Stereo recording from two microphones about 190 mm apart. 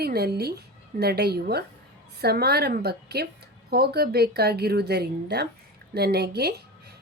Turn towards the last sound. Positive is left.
turn(degrees=-60)  # may be behind; listen again after turning